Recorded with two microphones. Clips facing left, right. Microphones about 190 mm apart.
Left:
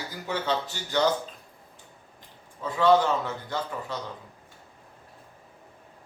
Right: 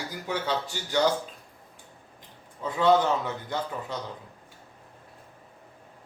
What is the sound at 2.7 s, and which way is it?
Speech, 20° right (ahead or behind).